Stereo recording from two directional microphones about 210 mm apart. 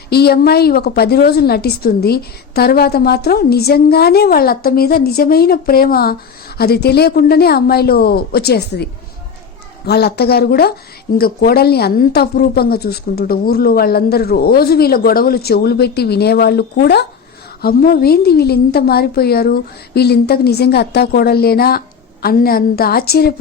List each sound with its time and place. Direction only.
0.1 s a woman's voice: 50° left (ahead or behind)